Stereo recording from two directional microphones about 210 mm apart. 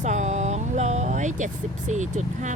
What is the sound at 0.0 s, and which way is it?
Music, 35° right (ahead or behind).